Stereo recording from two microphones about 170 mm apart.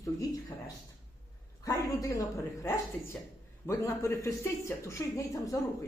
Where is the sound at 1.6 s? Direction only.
20° left (ahead or behind).